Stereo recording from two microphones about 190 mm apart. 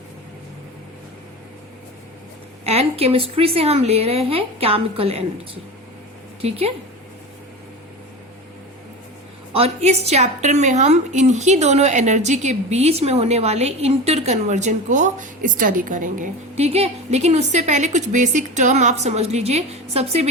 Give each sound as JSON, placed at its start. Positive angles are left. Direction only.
{"t": 2.6, "sound": "a woman's voice", "side_deg": -30}
{"t": 6.4, "sound": "a woman's voice", "side_deg": -30}
{"t": 9.5, "sound": "a woman's voice", "side_deg": -30}